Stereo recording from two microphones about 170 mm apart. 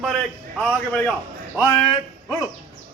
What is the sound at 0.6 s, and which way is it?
Speech, 5° left (ahead or behind).